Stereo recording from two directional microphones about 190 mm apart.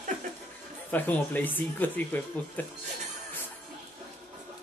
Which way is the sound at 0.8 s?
10° left (ahead or behind).